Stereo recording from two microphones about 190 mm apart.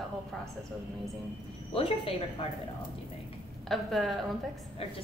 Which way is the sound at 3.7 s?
Centre (ahead or behind).